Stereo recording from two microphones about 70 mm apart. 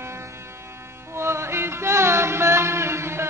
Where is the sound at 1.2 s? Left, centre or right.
Right.